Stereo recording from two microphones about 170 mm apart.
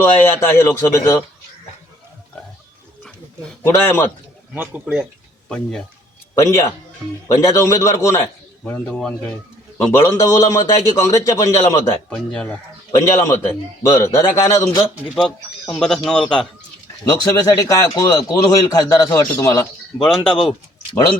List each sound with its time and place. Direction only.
0.0 s a man's voice: 15° left (ahead or behind)
3.6 s a man's voice: 15° left (ahead or behind)
4.5 s speech: 10° right (ahead or behind)
5.5 s speech: 5° left (ahead or behind)
6.3 s a man's voice: 20° left (ahead or behind)
12.1 s speech: 5° left (ahead or behind)
12.9 s a man's voice: 15° left (ahead or behind)
15.1 s speech: centre (ahead or behind)
17.1 s speech: 20° left (ahead or behind)
20.0 s speech: centre (ahead or behind)